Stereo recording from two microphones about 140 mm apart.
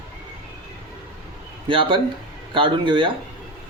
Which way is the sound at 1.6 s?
35° right (ahead or behind).